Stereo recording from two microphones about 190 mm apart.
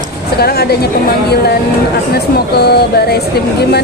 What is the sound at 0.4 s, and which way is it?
Speech, 55° left (ahead or behind).